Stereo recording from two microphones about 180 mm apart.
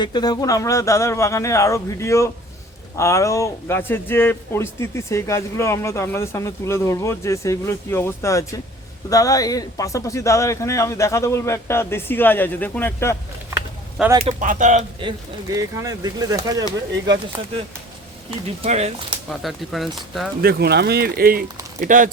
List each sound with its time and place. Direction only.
0.0 s speech: 25° left (ahead or behind)
14.2 s speech: 30° right (ahead or behind)
14.4 s speech: 45° right (ahead or behind)
15.5 s speech: 20° right (ahead or behind)
18.4 s speech: 35° right (ahead or behind)
19.4 s speech: centre (ahead or behind)
20.4 s speech: 60° right (ahead or behind)